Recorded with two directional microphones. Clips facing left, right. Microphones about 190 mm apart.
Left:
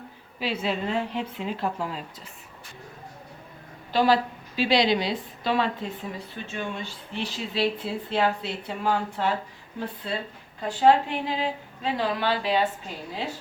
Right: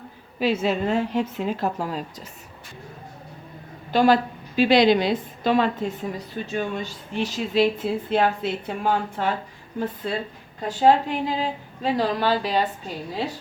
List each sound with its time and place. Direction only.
0.3 s a woman's voice: 45° right (ahead or behind)
3.9 s a woman's voice: 50° right (ahead or behind)